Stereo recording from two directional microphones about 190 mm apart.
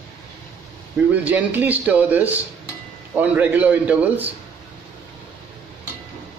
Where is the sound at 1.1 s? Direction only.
10° right (ahead or behind).